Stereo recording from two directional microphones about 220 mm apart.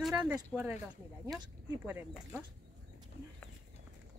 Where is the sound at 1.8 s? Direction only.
5° right (ahead or behind).